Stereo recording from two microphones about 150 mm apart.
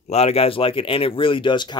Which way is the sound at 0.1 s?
45° left (ahead or behind).